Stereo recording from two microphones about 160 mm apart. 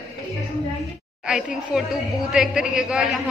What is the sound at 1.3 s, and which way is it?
A woman's voice, 5° right (ahead or behind).